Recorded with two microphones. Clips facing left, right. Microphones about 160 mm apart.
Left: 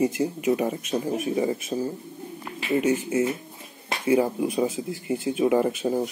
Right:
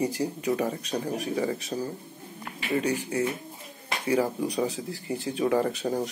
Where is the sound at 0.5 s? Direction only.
15° left (ahead or behind).